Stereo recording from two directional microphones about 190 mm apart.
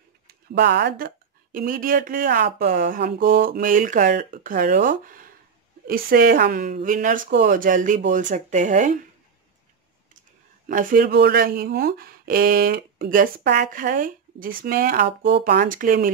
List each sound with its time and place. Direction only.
0.3 s speech: 55° right (ahead or behind); by 8.9 s 40° right (ahead or behind)
10.7 s speech: 45° right (ahead or behind)
15.2 s speech: 65° right (ahead or behind)
15.6 s speech: 45° right (ahead or behind)